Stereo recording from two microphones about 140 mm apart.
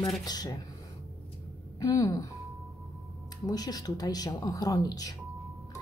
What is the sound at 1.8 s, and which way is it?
Speech, 25° left (ahead or behind).